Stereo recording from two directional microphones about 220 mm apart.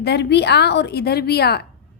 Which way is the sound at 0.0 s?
50° left (ahead or behind).